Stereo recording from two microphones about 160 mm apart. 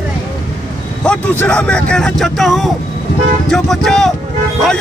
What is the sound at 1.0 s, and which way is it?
A man's voice, 5° left (ahead or behind).